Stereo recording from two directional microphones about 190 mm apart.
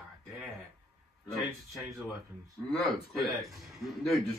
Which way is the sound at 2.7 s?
Centre (ahead or behind).